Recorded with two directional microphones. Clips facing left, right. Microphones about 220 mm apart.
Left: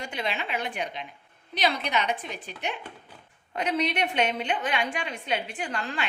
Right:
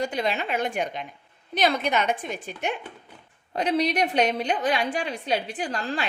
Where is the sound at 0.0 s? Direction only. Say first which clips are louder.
Right 6 dB; 40° right (ahead or behind).